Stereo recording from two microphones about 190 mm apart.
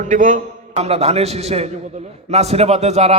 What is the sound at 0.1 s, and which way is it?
A man's voice, 40° right (ahead or behind).